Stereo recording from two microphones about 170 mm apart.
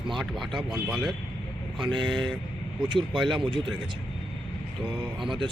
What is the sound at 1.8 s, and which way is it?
Speech, 25° right (ahead or behind).